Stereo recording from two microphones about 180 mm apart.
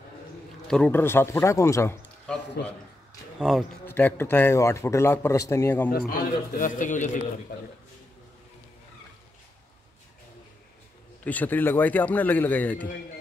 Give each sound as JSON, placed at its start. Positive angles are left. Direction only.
{"t": 0.7, "sound": "speech", "side_deg": 5}
{"t": 3.3, "sound": "speech", "side_deg": 0}
{"t": 3.8, "sound": "speech", "side_deg": 10}
{"t": 5.9, "sound": "speech", "side_deg": 55}
{"t": 11.2, "sound": "speech", "side_deg": 10}